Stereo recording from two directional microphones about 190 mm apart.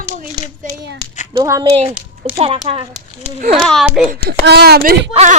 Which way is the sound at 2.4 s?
30° right (ahead or behind).